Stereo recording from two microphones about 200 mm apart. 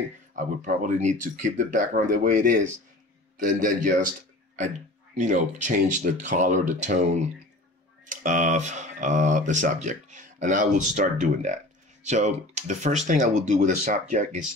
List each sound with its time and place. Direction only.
0.4 s speech: 40° right (ahead or behind)
5.1 s speech: 35° right (ahead or behind)